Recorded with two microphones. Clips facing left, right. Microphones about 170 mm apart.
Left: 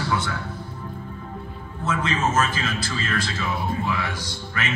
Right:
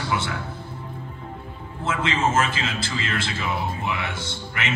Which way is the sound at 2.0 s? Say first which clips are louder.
Right 1 dB; 25° right (ahead or behind).